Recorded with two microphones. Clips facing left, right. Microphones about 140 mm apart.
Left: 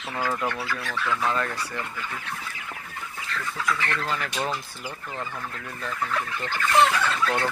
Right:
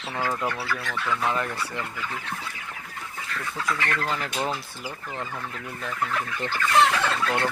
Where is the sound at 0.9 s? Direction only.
15° right (ahead or behind).